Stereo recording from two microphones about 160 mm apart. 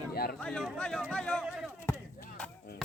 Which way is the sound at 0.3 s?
5° left (ahead or behind).